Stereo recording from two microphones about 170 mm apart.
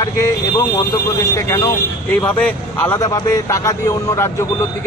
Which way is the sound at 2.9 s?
20° left (ahead or behind).